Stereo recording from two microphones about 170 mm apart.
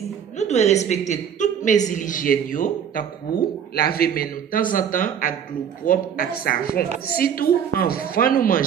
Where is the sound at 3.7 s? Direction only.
65° left (ahead or behind).